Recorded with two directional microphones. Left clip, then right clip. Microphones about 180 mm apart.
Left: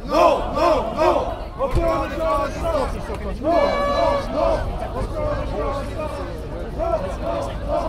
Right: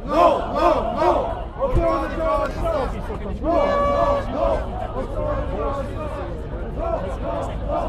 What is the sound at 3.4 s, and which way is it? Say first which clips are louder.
Speech: left 1 dB; 45° left (ahead or behind).